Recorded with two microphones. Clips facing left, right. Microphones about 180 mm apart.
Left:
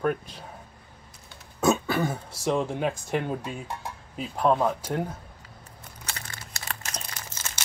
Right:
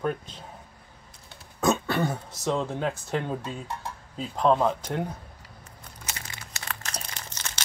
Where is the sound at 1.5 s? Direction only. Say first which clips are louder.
Left 1 dB; centre (ahead or behind).